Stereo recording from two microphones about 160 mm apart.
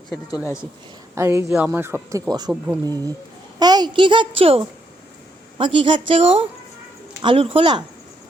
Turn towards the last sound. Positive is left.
turn(degrees=-30)  # may be behind; listen again after turning